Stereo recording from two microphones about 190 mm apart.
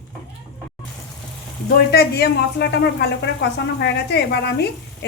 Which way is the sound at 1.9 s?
60° left (ahead or behind).